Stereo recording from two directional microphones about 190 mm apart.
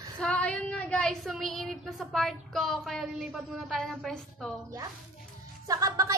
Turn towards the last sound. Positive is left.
turn(degrees=-15)  # may be behind; listen again after turning